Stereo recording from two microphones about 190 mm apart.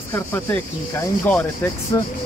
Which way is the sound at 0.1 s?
10° left (ahead or behind).